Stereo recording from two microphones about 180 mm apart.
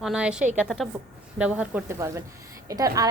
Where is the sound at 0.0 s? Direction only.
5° right (ahead or behind).